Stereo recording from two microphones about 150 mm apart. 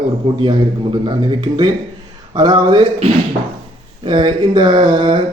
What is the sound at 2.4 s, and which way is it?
Speech, 30° right (ahead or behind).